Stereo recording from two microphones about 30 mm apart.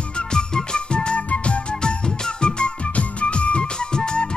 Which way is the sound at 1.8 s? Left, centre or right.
Left.